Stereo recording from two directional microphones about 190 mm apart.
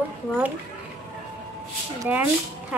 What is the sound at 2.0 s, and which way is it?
Speech, 10° right (ahead or behind).